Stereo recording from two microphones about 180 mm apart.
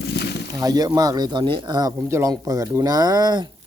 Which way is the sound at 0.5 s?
20° right (ahead or behind).